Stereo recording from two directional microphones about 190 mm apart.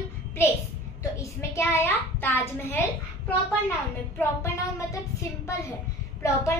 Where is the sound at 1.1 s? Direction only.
15° left (ahead or behind).